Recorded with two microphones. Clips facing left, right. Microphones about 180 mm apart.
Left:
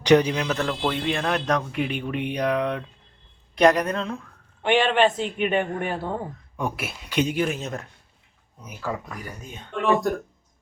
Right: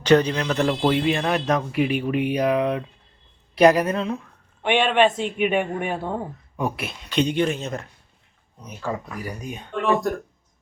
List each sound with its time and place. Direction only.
0.0 s speech: 15° left (ahead or behind)
0.5 s speech: 15° right (ahead or behind)
9.4 s speech: 15° right (ahead or behind)
9.7 s speech: centre (ahead or behind)